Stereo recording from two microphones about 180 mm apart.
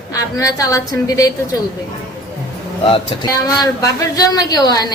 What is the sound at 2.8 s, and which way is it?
A woman's voice, 25° left (ahead or behind).